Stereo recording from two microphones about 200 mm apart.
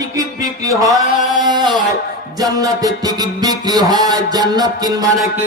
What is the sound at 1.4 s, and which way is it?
Music, 20° right (ahead or behind).